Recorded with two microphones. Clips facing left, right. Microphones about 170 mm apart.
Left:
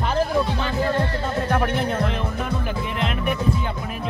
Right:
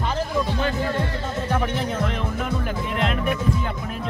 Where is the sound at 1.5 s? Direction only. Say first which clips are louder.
Left 2 dB; 60° left (ahead or behind).